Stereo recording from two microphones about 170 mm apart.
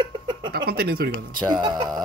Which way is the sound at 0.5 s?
65° right (ahead or behind).